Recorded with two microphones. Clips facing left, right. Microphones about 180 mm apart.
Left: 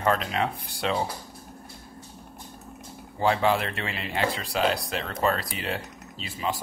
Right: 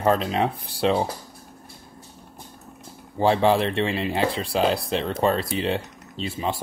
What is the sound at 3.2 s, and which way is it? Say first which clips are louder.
Speech: right 4 dB; 30° right (ahead or behind).